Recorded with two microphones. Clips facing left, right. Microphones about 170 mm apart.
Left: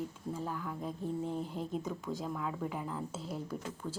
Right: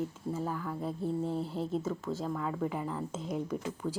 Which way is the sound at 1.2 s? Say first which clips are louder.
Right 3 dB; 35° right (ahead or behind).